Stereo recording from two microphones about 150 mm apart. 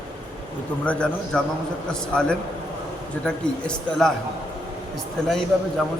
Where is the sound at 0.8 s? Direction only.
5° left (ahead or behind).